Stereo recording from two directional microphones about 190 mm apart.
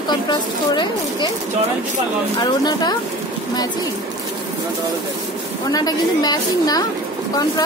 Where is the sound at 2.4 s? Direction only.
20° left (ahead or behind).